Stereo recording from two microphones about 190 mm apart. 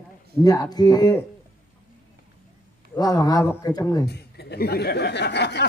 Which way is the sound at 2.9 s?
20° left (ahead or behind).